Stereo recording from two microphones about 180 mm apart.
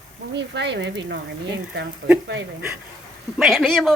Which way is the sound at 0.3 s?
75° right (ahead or behind).